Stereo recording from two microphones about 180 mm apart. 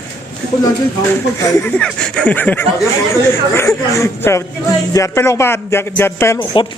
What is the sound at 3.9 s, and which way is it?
Speech, 15° left (ahead or behind).